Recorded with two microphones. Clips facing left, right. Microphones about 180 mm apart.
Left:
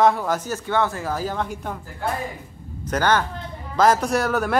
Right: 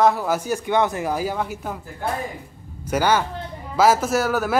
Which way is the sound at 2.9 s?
10° right (ahead or behind).